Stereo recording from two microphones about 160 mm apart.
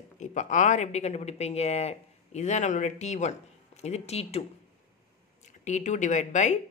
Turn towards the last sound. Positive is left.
turn(degrees=50)  # may be behind; listen again after turning